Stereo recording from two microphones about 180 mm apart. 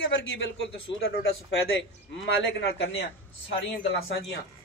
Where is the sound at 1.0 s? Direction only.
65° left (ahead or behind).